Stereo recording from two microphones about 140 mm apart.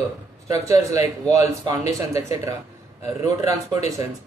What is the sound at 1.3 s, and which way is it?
Speech, 25° right (ahead or behind).